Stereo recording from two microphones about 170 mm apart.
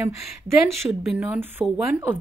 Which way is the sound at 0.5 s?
15° right (ahead or behind).